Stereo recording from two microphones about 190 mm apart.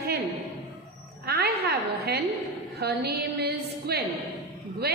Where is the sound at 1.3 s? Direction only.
55° right (ahead or behind).